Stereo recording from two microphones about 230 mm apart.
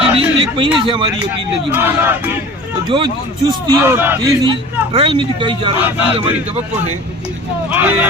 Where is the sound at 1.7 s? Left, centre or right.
Centre.